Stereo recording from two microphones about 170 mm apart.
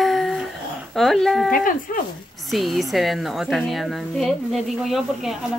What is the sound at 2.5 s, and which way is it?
A woman's voice, centre (ahead or behind).